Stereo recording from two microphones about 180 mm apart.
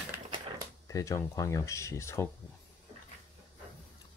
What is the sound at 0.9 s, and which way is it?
Speech, 15° left (ahead or behind).